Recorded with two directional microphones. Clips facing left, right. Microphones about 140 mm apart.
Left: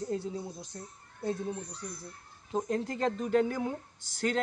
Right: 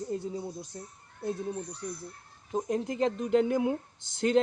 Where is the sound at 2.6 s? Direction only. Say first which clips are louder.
Right 3 dB; 15° right (ahead or behind).